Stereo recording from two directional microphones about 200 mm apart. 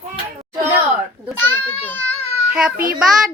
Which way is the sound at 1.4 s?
10° left (ahead or behind).